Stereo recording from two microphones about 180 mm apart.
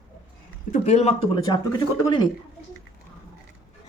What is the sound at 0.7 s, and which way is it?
Speech, 40° left (ahead or behind).